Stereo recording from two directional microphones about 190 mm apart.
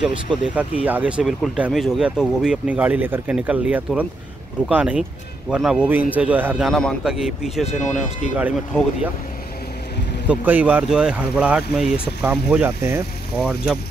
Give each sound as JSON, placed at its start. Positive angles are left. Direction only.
{"t": 0.0, "sound": "a man's voice", "side_deg": -5}
{"t": 7.6, "sound": "speech", "side_deg": 35}
{"t": 10.2, "sound": "speech", "side_deg": -10}